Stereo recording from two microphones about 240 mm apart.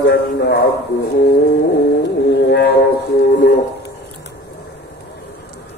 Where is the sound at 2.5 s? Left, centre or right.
Left.